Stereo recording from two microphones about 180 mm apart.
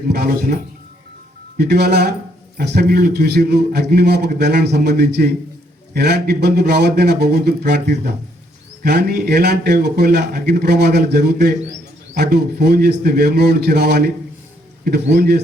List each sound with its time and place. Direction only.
0.1 s a man's voice: 55° right (ahead or behind)